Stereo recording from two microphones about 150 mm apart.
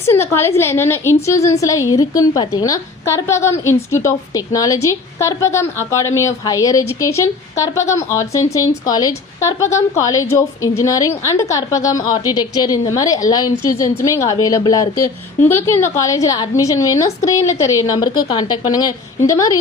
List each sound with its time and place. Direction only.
0.1 s a woman's voice: 15° left (ahead or behind)